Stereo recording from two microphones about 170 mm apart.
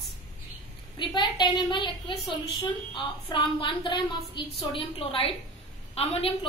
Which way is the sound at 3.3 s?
30° left (ahead or behind).